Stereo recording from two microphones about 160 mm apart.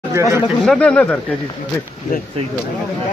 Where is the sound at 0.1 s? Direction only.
20° right (ahead or behind).